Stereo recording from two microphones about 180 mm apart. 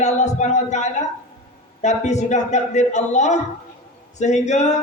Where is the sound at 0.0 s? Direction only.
40° left (ahead or behind).